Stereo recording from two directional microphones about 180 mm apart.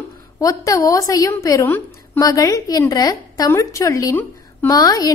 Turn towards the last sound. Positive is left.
turn(degrees=20)  # may be behind; listen again after turning